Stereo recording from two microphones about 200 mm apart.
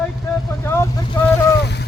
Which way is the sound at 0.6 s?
15° left (ahead or behind).